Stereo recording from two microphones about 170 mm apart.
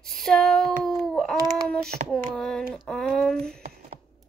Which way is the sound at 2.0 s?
45° right (ahead or behind).